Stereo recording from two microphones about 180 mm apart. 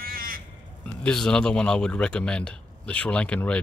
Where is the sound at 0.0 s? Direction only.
55° right (ahead or behind).